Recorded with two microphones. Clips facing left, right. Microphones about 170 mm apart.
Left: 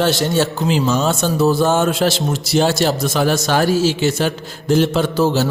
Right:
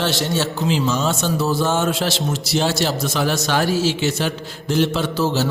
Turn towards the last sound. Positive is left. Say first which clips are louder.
# left 4 dB
turn(degrees=50)  # may be behind; listen again after turning